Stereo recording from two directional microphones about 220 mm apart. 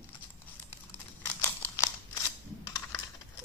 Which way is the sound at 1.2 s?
10° left (ahead or behind).